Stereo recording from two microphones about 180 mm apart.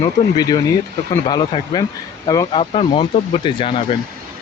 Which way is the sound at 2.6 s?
35° left (ahead or behind).